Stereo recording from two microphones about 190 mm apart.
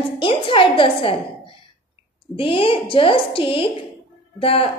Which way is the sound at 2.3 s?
30° left (ahead or behind).